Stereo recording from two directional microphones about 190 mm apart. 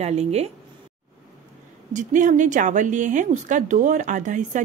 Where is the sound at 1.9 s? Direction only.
40° right (ahead or behind).